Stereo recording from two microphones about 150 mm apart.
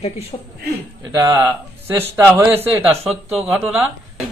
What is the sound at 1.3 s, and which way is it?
Speech, 15° right (ahead or behind).